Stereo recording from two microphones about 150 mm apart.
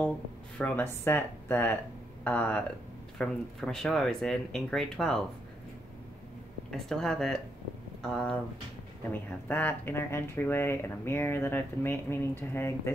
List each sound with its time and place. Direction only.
0.6 s speech: 10° left (ahead or behind)
6.9 s speech: 5° left (ahead or behind)